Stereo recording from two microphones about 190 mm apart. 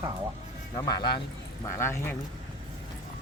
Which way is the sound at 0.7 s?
20° left (ahead or behind).